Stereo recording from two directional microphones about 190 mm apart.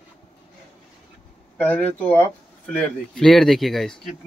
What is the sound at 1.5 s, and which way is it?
A man's voice, 10° left (ahead or behind).